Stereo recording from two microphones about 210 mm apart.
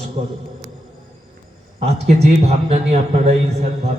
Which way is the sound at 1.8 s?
30° right (ahead or behind).